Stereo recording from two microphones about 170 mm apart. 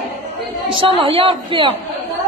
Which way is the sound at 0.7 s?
30° right (ahead or behind).